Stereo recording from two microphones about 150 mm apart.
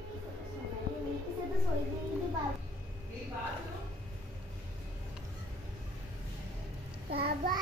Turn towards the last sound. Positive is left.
turn(degrees=-90)